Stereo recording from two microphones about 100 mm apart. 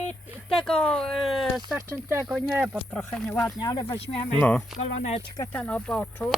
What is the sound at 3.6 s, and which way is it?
Speech, 40° left (ahead or behind).